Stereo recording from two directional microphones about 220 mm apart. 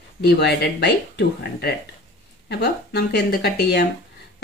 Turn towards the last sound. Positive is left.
turn(degrees=50)  # may be behind; listen again after turning